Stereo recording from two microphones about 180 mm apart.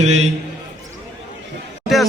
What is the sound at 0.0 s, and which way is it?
Speech, 35° right (ahead or behind).